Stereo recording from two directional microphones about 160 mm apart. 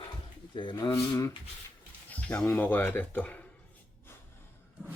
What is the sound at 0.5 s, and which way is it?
Speech, 30° left (ahead or behind).